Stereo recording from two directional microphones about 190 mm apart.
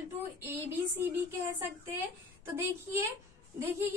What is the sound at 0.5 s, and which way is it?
A woman's voice, 10° right (ahead or behind).